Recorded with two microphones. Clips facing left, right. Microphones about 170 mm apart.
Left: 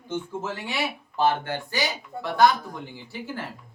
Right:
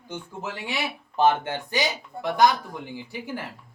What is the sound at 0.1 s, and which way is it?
Speech, 15° right (ahead or behind).